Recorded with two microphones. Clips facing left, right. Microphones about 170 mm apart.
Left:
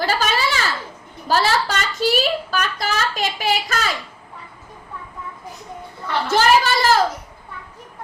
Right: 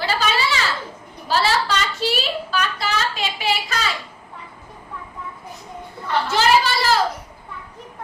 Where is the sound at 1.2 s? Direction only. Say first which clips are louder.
Left 1 dB; 45° left (ahead or behind).